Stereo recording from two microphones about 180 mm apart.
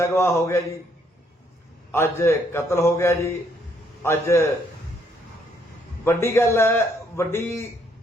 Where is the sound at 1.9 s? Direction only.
15° left (ahead or behind).